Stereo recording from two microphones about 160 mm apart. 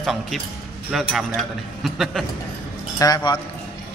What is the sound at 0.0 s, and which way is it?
A man's voice, centre (ahead or behind).